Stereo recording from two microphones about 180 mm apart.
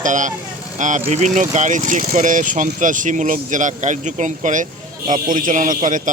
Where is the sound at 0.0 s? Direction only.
45° right (ahead or behind).